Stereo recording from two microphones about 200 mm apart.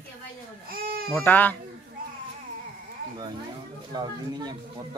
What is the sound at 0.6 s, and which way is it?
Baby cry, 50° right (ahead or behind).